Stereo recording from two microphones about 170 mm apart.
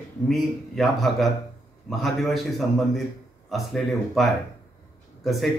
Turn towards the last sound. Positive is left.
turn(degrees=0)  # may be behind; listen again after turning